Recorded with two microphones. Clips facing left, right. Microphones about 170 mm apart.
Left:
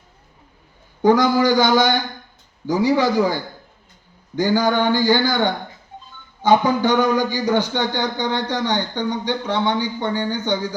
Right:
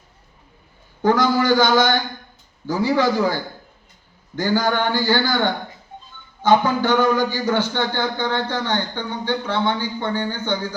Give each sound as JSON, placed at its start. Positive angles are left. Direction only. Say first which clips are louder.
{"t": 1.0, "sound": "speech", "louder": "left 2 dB", "side_deg": 15}